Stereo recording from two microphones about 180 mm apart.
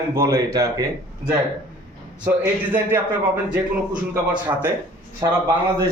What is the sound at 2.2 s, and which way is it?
A man's voice, 10° right (ahead or behind).